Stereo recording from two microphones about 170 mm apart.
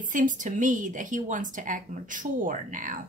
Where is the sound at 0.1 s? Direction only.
50° right (ahead or behind).